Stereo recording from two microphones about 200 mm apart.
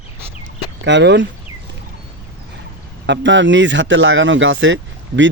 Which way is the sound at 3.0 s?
65° right (ahead or behind).